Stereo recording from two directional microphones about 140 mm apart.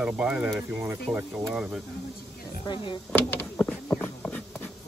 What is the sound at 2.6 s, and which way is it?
Speech, 35° left (ahead or behind).